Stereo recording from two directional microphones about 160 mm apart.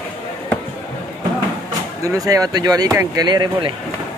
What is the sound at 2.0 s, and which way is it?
Speech, 20° right (ahead or behind).